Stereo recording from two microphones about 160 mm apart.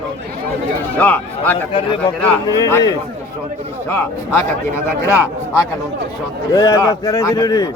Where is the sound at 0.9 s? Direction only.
10° left (ahead or behind).